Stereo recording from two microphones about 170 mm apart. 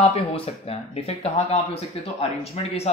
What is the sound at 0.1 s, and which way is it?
Speech, 35° left (ahead or behind).